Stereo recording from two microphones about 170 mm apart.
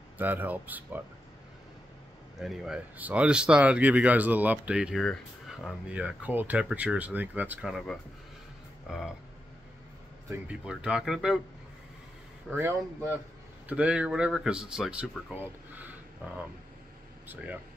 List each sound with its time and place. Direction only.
0.2 s speech: 10° right (ahead or behind)
2.4 s speech: 5° right (ahead or behind)
7.7 s speech: centre (ahead or behind)
10.3 s speech: 5° right (ahead or behind)
12.4 s a man's voice: 15° right (ahead or behind)